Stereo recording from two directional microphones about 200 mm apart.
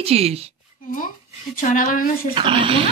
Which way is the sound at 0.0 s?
30° right (ahead or behind).